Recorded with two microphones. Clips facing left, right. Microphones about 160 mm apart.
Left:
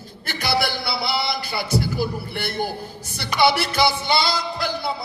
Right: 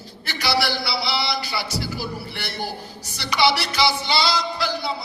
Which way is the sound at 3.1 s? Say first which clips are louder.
Left 2 dB; 50° left (ahead or behind).